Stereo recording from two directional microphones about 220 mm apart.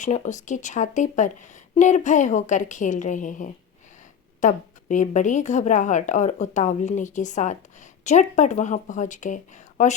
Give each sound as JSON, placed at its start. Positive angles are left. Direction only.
{"t": 0.0, "sound": "speech", "side_deg": 35}